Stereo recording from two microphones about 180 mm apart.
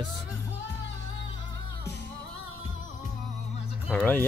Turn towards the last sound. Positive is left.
turn(degrees=10)  # may be behind; listen again after turning